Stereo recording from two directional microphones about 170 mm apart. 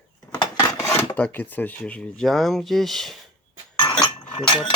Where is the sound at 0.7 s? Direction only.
15° left (ahead or behind).